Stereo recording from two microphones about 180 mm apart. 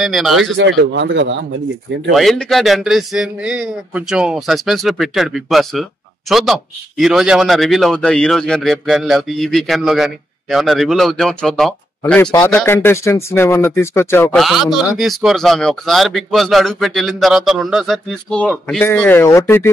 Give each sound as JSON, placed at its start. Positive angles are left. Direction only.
{"t": 0.0, "sound": "a man's voice", "side_deg": 0}
{"t": 0.6, "sound": "speech", "side_deg": -85}
{"t": 2.1, "sound": "a man's voice", "side_deg": 0}
{"t": 14.4, "sound": "a man's voice", "side_deg": 0}